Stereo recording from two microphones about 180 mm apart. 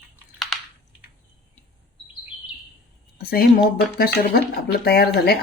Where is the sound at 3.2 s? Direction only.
55° left (ahead or behind).